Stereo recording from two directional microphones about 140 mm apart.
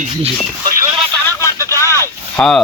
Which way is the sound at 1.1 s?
15° left (ahead or behind).